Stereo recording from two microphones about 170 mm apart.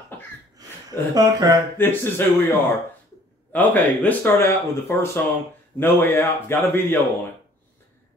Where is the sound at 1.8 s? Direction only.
10° left (ahead or behind).